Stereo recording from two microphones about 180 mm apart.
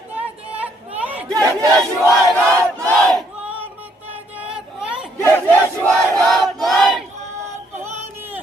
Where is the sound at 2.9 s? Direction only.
Centre (ahead or behind).